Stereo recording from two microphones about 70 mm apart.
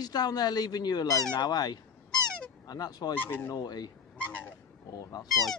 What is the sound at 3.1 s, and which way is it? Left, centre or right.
Speech, left.